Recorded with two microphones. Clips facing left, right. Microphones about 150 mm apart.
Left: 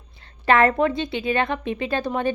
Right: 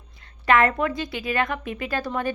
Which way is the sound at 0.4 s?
35° left (ahead or behind).